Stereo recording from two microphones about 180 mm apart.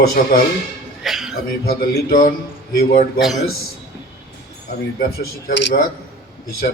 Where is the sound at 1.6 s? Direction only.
50° left (ahead or behind).